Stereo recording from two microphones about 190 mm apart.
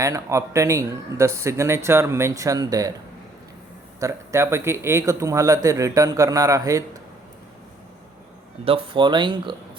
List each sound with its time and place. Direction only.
0.0 s speech: 15° right (ahead or behind)
4.0 s speech: 15° right (ahead or behind)
8.6 s speech: 30° right (ahead or behind)